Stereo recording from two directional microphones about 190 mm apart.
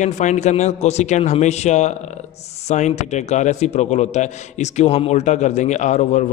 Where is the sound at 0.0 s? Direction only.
40° left (ahead or behind).